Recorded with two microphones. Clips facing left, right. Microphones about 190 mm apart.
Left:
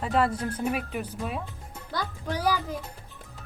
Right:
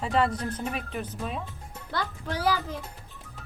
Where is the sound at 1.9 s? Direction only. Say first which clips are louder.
Even; 15° left (ahead or behind).